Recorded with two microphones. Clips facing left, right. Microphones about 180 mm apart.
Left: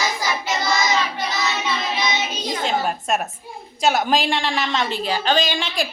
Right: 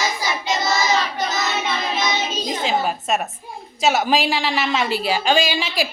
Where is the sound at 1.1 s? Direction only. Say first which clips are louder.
Right 2 dB; 45° right (ahead or behind).